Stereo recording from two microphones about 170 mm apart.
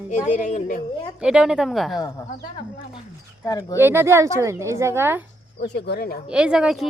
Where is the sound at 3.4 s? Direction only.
20° left (ahead or behind).